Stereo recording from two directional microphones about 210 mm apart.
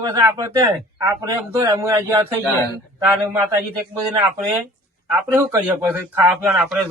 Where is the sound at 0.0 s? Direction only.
15° right (ahead or behind).